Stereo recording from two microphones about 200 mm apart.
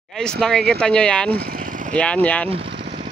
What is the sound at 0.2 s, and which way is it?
Speech, centre (ahead or behind).